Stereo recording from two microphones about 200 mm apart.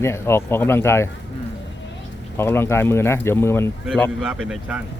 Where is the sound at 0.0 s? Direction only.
10° left (ahead or behind).